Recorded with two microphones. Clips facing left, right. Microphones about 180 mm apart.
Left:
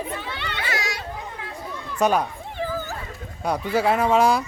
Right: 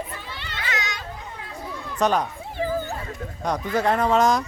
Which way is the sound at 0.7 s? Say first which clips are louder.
Left 1 dB; 30° left (ahead or behind).